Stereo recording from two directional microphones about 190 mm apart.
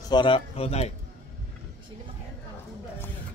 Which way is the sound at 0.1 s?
25° left (ahead or behind).